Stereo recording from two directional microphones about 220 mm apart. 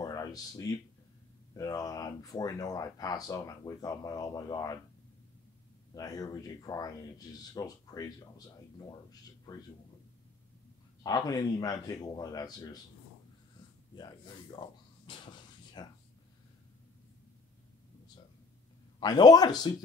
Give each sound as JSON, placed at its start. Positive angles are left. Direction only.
{"t": 0.0, "sound": "a sound", "side_deg": 15}
{"t": 1.6, "sound": "speech", "side_deg": 15}
{"t": 5.9, "sound": "speech", "side_deg": 15}
{"t": 11.0, "sound": "speech", "side_deg": 15}
{"t": 13.9, "sound": "a sound", "side_deg": 20}
{"t": 15.8, "sound": "speech", "side_deg": 20}
{"t": 18.9, "sound": "speech", "side_deg": 20}